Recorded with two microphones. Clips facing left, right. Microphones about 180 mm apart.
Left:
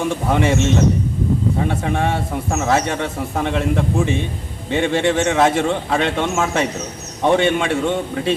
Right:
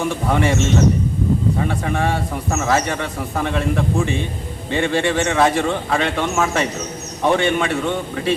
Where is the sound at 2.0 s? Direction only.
20° left (ahead or behind).